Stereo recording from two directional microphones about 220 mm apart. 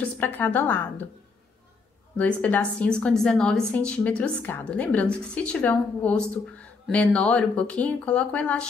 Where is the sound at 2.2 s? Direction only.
5° left (ahead or behind).